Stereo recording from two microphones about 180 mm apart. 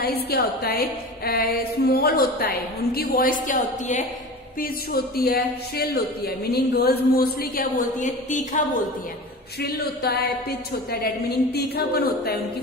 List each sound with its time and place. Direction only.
0.0 s speech: 60° left (ahead or behind); by 4.0 s 45° left (ahead or behind)
4.6 s speech: 55° left (ahead or behind)
9.6 s speech: 60° left (ahead or behind)